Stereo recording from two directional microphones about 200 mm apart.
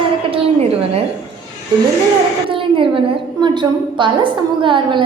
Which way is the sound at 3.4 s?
20° right (ahead or behind).